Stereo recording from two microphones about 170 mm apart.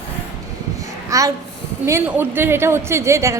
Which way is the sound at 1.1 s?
20° right (ahead or behind).